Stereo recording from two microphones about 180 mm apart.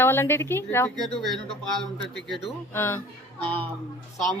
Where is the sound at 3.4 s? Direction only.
30° right (ahead or behind).